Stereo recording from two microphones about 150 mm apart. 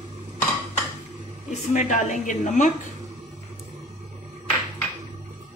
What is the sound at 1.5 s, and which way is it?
Speech, 55° left (ahead or behind).